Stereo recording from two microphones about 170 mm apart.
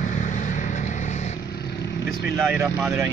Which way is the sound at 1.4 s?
70° left (ahead or behind).